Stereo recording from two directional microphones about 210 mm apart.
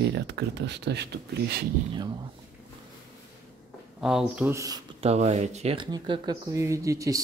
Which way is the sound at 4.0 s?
Centre (ahead or behind).